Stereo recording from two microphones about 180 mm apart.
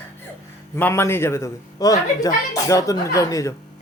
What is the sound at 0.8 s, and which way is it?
A man's voice, 10° left (ahead or behind).